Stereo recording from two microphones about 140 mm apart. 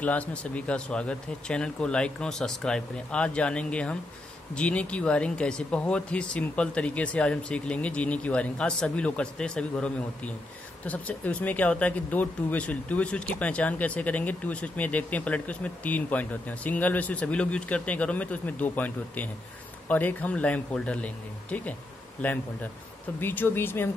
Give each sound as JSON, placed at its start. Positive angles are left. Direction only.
{"t": 0.0, "sound": "speech", "side_deg": 10}